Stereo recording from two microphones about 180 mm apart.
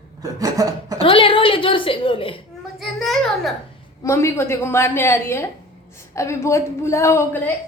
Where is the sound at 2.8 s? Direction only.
Centre (ahead or behind).